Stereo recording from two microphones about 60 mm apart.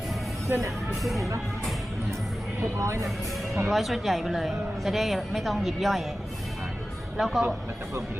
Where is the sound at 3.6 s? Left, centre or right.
Centre.